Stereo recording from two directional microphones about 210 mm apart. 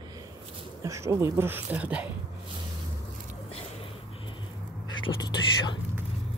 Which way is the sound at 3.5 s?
25° left (ahead or behind).